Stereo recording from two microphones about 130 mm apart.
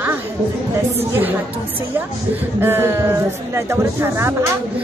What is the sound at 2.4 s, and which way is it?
Speech, 15° right (ahead or behind).